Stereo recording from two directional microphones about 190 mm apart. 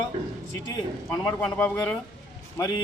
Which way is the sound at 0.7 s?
15° left (ahead or behind).